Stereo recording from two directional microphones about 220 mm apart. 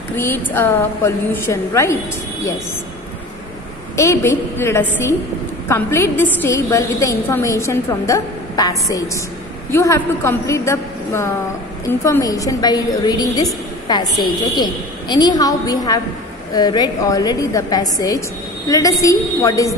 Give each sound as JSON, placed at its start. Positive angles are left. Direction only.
{"t": 0.1, "sound": "a woman's voice", "side_deg": 10}
{"t": 3.9, "sound": "a woman's voice", "side_deg": 15}
{"t": 14.5, "sound": "a woman's voice", "side_deg": 20}